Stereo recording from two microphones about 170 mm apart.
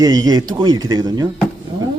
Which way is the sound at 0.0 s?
25° right (ahead or behind).